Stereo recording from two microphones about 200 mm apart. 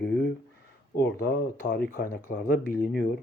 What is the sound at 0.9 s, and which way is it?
Speech, 55° left (ahead or behind).